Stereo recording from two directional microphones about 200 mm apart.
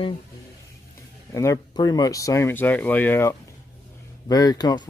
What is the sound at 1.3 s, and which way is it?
Speech, 15° left (ahead or behind).